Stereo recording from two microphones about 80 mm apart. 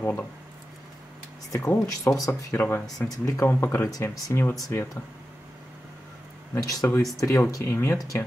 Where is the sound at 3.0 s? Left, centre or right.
Left.